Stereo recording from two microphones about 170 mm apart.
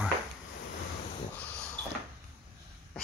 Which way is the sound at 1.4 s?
5° left (ahead or behind).